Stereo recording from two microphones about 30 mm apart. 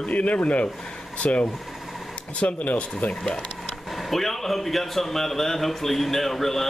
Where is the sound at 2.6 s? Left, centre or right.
Left.